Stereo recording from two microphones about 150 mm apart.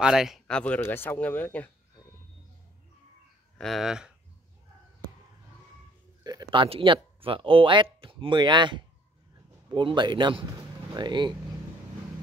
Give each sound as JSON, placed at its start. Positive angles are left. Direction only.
{"t": 0.0, "sound": "a man's voice", "side_deg": -5}
{"t": 3.5, "sound": "speech", "side_deg": 0}
{"t": 6.2, "sound": "speech", "side_deg": -30}